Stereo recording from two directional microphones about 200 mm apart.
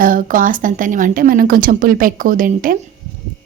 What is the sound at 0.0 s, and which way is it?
A woman's voice, 45° right (ahead or behind).